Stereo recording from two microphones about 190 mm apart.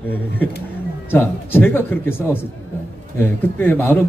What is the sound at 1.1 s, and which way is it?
Speech, 10° left (ahead or behind).